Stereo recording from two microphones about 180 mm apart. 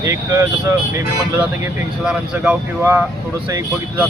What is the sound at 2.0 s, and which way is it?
Speech, 5° right (ahead or behind).